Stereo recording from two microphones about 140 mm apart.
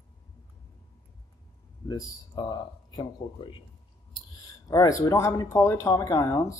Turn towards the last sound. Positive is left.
turn(degrees=25)  # may be behind; listen again after turning